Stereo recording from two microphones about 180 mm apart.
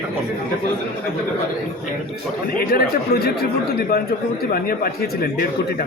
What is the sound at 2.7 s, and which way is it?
Speech, 60° left (ahead or behind).